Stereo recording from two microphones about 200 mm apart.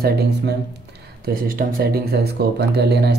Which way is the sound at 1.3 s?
50° right (ahead or behind).